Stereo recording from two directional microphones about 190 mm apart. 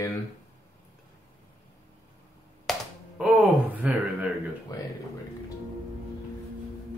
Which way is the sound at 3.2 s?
5° right (ahead or behind).